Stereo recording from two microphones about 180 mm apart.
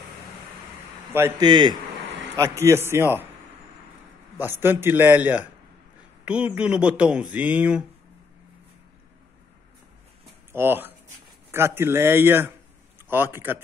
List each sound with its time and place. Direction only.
1.4 s a man's voice: 25° right (ahead or behind)
4.4 s speech: 10° right (ahead or behind)
10.5 s speech: 10° right (ahead or behind)